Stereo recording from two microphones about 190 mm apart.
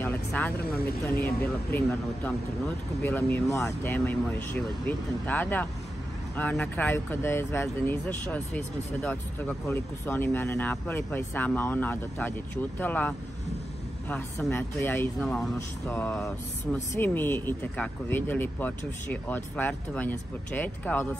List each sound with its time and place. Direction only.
0.0 s vehicle: 10° left (ahead or behind)
0.6 s speech: 55° left (ahead or behind)
1.7 s speech: 10° left (ahead or behind)